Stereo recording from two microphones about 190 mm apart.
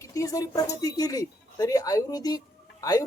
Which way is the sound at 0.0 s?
15° left (ahead or behind).